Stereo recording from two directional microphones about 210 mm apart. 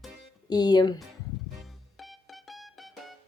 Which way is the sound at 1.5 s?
Centre (ahead or behind).